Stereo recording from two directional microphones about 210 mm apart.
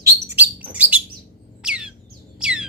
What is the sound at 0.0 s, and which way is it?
Bird, 10° right (ahead or behind).